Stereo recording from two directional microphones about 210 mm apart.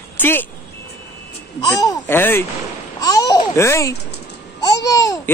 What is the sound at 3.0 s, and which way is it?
Babbling, 15° left (ahead or behind).